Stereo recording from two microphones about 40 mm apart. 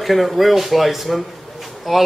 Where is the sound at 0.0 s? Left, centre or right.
Centre.